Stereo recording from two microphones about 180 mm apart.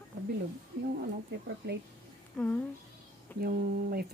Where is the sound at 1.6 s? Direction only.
70° right (ahead or behind).